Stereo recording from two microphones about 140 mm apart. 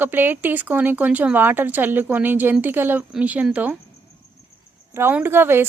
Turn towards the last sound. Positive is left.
turn(degrees=-15)  # may be behind; listen again after turning